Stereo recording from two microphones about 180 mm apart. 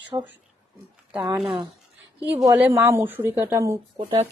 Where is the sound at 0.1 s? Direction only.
20° right (ahead or behind).